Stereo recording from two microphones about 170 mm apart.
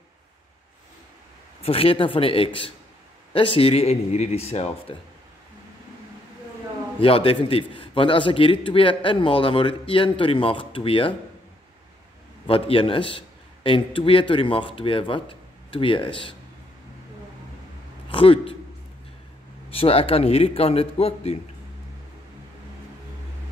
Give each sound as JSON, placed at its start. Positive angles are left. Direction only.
{"t": 1.6, "sound": "a man's voice", "side_deg": 35}
{"t": 7.0, "sound": "a man's voice", "side_deg": 35}
{"t": 12.4, "sound": "a man's voice", "side_deg": 35}
{"t": 18.1, "sound": "a man's voice", "side_deg": 30}
{"t": 19.7, "sound": "a man's voice", "side_deg": 35}